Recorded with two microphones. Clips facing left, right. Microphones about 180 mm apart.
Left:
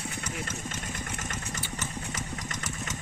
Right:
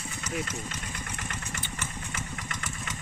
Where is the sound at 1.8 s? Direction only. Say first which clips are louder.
Left 2 dB; 40° left (ahead or behind).